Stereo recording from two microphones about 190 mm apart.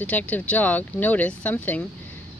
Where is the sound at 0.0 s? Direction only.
10° left (ahead or behind).